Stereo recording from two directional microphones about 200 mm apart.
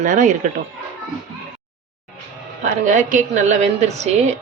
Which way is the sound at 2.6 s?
40° right (ahead or behind).